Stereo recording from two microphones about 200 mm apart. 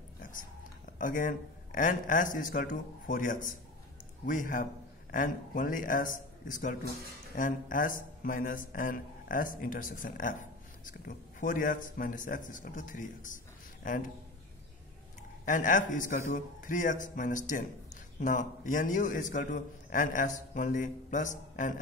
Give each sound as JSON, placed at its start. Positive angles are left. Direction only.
{"t": 0.9, "sound": "a man's voice", "side_deg": 40}
{"t": 15.4, "sound": "a man's voice", "side_deg": 40}